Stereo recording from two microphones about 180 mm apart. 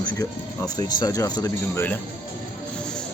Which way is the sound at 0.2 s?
20° left (ahead or behind).